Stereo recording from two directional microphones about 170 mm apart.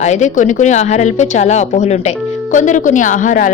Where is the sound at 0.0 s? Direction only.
45° left (ahead or behind).